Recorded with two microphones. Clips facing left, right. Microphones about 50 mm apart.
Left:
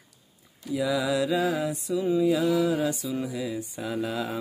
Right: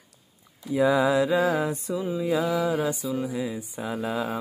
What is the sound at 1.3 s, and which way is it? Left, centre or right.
Music, centre.